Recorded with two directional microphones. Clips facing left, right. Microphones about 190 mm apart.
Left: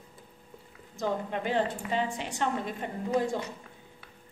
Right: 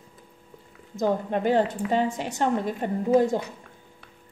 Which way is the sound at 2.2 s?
40° right (ahead or behind).